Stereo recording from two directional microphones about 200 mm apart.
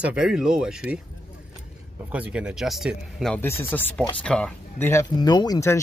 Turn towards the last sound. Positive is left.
turn(degrees=15)  # may be behind; listen again after turning